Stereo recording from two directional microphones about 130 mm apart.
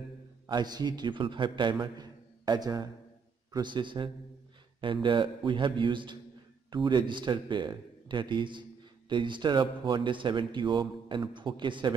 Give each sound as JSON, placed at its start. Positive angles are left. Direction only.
{"t": 0.5, "sound": "a man's voice", "side_deg": -30}